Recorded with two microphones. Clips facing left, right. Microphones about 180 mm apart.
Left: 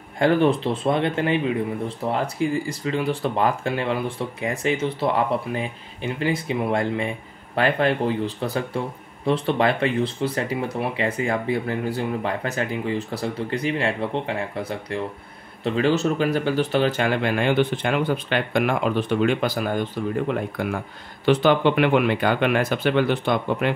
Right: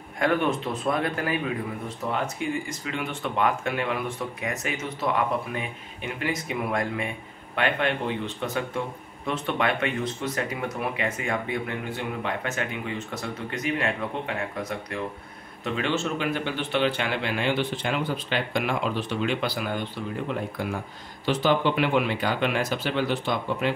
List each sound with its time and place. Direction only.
0.2 s speech: 30° left (ahead or behind); by 23.7 s 55° left (ahead or behind)